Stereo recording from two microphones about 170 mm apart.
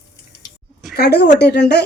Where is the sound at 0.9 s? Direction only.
70° left (ahead or behind).